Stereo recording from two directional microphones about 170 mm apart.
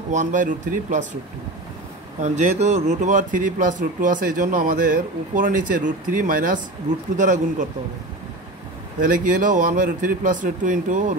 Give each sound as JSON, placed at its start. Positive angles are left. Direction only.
{"t": 0.1, "sound": "a man's voice", "side_deg": -50}
{"t": 2.1, "sound": "a man's voice", "side_deg": -45}
{"t": 9.0, "sound": "a man's voice", "side_deg": -50}